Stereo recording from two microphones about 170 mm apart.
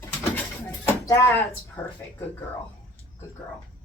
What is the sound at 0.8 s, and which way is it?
Speech, 15° left (ahead or behind).